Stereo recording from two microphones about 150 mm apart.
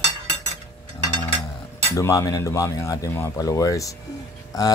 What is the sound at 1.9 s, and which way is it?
Speech, 20° left (ahead or behind).